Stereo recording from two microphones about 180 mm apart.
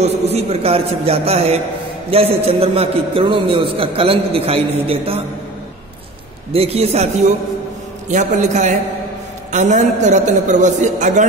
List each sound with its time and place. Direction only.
0.0 s a man's voice: 35° right (ahead or behind)
6.5 s a man's voice: 35° right (ahead or behind)